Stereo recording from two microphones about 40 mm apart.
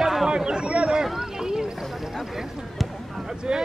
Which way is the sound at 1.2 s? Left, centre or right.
Centre.